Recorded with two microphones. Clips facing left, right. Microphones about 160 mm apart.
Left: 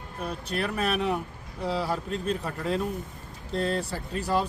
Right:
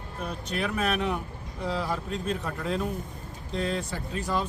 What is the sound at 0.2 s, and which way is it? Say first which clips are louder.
Speech: left 1 dB; 5° left (ahead or behind).